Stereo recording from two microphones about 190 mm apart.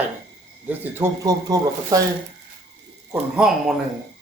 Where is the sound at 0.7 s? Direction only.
15° right (ahead or behind).